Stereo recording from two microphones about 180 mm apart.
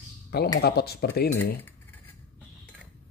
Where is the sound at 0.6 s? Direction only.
60° left (ahead or behind).